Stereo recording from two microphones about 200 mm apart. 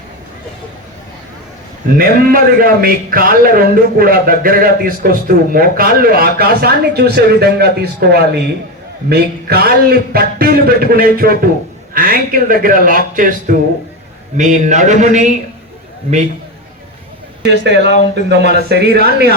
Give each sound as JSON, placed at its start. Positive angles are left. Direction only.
{"t": 2.0, "sound": "a man's voice", "side_deg": -45}
{"t": 17.4, "sound": "a man's voice", "side_deg": -55}